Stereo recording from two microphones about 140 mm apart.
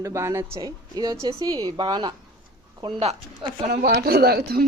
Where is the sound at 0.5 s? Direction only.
30° right (ahead or behind).